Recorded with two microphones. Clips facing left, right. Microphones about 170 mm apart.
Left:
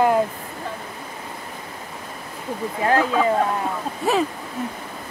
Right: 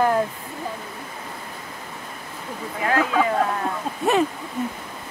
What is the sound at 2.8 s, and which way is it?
Speech, 30° left (ahead or behind).